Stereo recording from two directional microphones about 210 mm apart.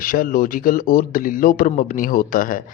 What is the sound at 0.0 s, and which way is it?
A man's voice, 40° left (ahead or behind).